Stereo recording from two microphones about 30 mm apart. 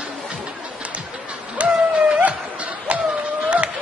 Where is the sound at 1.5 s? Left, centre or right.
Right.